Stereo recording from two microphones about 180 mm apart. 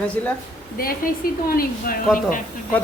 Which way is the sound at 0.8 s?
55° left (ahead or behind).